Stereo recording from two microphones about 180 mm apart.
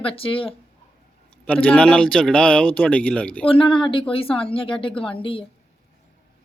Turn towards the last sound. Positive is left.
turn(degrees=30)  # may be behind; listen again after turning